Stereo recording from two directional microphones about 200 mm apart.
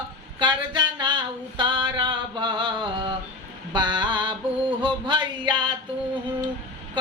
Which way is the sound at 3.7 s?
20° right (ahead or behind).